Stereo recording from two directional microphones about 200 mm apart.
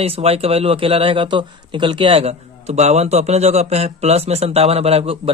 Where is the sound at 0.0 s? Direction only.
30° right (ahead or behind).